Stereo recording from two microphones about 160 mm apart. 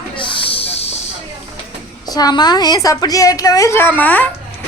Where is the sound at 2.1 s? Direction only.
25° left (ahead or behind).